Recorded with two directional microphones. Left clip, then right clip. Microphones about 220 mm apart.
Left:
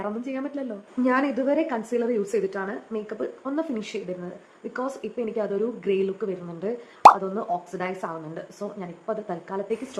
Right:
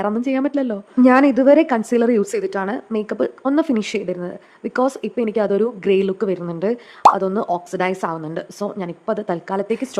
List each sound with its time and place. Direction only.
0.0 s a woman's voice: 50° right (ahead or behind)